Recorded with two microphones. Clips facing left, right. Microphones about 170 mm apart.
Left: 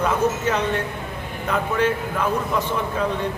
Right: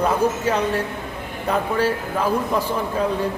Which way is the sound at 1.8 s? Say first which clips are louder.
Even; 35° right (ahead or behind).